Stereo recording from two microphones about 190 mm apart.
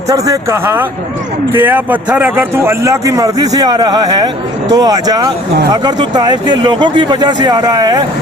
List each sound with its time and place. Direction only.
0.1 s a man's voice: 15° right (ahead or behind)